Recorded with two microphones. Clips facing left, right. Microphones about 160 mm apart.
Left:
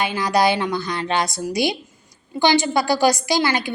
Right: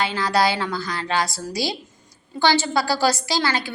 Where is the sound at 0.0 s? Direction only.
15° left (ahead or behind).